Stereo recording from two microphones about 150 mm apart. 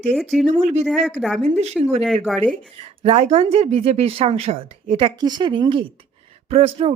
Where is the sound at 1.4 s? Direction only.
50° right (ahead or behind).